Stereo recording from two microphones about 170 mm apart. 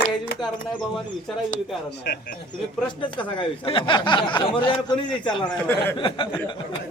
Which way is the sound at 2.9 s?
30° left (ahead or behind).